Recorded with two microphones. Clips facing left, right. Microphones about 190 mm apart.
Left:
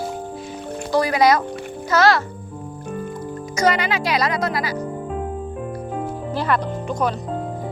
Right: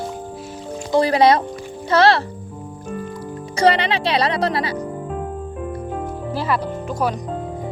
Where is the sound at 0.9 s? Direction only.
30° right (ahead or behind).